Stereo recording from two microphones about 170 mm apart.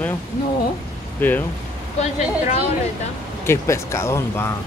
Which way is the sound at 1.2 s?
10° left (ahead or behind).